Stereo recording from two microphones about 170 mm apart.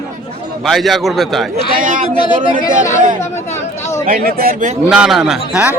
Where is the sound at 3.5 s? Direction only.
15° left (ahead or behind).